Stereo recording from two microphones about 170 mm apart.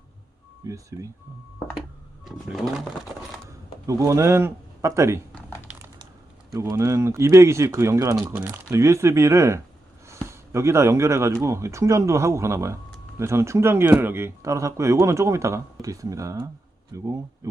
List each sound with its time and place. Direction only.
0.6 s speech: 20° right (ahead or behind)
3.8 s speech: 20° right (ahead or behind)
6.5 s speech: 20° right (ahead or behind)